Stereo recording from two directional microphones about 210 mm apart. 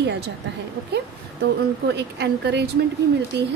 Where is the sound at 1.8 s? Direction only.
55° right (ahead or behind).